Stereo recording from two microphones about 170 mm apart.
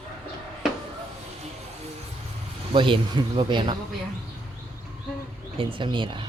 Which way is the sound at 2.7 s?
30° right (ahead or behind).